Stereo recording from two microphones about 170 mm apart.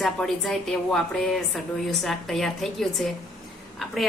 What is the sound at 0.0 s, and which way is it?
A woman's voice, centre (ahead or behind).